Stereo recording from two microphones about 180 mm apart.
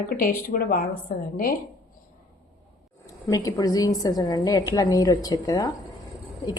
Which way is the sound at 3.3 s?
20° left (ahead or behind).